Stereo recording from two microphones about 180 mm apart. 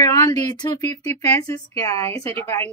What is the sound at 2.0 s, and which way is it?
Speech, 35° right (ahead or behind).